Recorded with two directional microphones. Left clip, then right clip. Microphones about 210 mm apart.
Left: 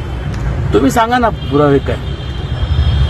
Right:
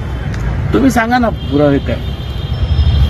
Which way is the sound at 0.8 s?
10° left (ahead or behind).